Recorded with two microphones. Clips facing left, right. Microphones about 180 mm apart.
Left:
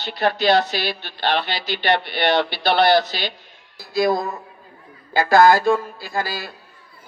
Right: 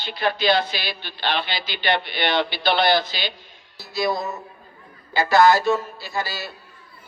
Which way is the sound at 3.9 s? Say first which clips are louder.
Left 4 dB; 50° left (ahead or behind).